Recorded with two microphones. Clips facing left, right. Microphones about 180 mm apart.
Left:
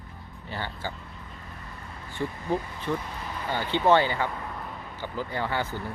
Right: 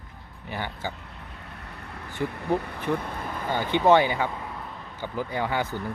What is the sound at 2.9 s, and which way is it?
Vehicle, 60° right (ahead or behind).